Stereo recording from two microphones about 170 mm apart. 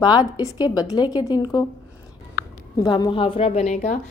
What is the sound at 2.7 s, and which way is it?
A woman's voice, 20° left (ahead or behind).